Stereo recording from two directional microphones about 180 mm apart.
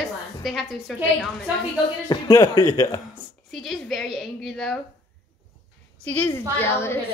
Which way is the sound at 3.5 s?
Centre (ahead or behind).